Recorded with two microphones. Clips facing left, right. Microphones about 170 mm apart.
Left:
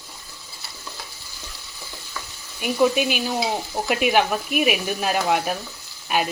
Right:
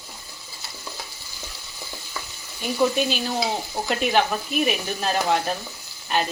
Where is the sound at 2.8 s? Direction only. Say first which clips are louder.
Left 2 dB; 10° left (ahead or behind).